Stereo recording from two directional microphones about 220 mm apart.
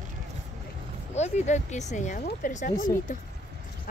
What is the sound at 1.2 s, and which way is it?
Speech, 30° left (ahead or behind).